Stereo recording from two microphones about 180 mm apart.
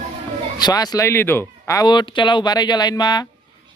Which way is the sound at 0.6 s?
20° left (ahead or behind).